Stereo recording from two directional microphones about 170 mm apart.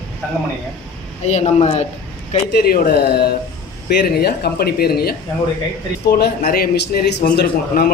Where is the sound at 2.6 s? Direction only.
65° left (ahead or behind).